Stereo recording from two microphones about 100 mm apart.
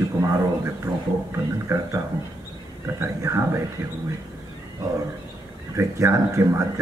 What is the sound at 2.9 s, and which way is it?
Speech, 25° right (ahead or behind).